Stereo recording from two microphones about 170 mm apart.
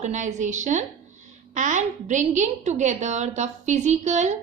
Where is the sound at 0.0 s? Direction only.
45° right (ahead or behind).